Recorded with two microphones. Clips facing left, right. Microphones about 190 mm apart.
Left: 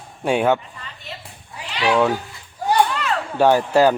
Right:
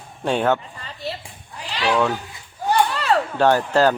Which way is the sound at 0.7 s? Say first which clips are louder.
Right 6 dB; 35° right (ahead or behind).